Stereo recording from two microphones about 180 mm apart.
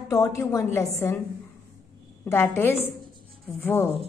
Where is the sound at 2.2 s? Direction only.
10° left (ahead or behind).